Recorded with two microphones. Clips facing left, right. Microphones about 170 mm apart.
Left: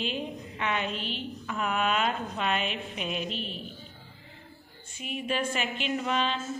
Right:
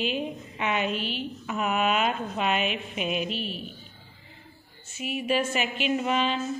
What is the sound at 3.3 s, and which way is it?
Speech, 25° left (ahead or behind).